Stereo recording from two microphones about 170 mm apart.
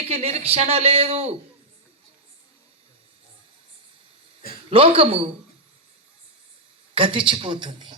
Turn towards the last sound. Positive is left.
turn(degrees=-30)  # may be behind; listen again after turning